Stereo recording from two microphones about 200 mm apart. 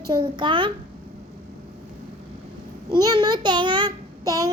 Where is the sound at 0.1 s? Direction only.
25° right (ahead or behind).